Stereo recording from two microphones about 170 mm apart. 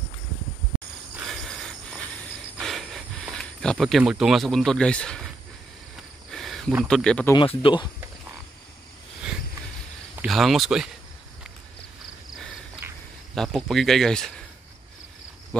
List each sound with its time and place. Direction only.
1.2 s cricket: centre (ahead or behind)
2.6 s a sound: centre (ahead or behind)
6.3 s cricket: centre (ahead or behind)
6.8 s speech: 5° left (ahead or behind)
7.3 s speech: 30° left (ahead or behind)
10.1 s speech: centre (ahead or behind)
13.3 s speech: centre (ahead or behind)